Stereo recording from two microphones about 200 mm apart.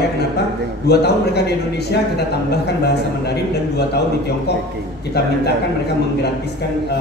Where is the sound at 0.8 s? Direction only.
55° left (ahead or behind).